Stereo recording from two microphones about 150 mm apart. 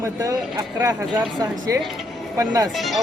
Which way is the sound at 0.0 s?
20° right (ahead or behind).